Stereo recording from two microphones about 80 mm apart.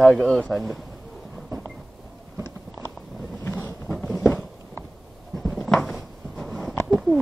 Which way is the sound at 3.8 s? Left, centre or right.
Centre.